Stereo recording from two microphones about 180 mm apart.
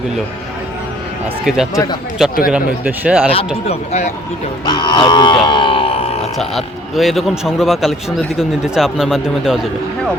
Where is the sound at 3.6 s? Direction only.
40° left (ahead or behind).